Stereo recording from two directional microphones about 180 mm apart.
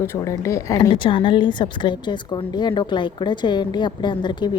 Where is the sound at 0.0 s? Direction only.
15° left (ahead or behind).